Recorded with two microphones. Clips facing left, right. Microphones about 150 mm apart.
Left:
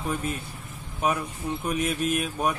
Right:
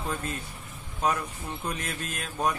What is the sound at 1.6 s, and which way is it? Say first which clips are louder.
Speech: left 9 dB; 15° left (ahead or behind).